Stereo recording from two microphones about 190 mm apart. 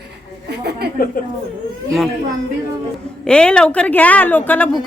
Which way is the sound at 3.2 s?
5° left (ahead or behind).